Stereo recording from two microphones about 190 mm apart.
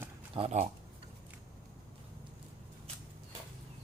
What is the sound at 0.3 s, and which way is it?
Speech, 35° right (ahead or behind).